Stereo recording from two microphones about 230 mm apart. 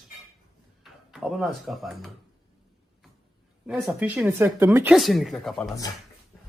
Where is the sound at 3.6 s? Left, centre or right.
Centre.